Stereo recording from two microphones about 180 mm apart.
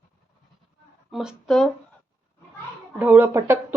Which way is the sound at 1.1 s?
5° right (ahead or behind).